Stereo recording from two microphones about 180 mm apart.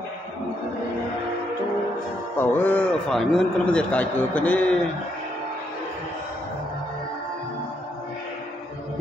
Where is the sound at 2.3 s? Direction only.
10° left (ahead or behind).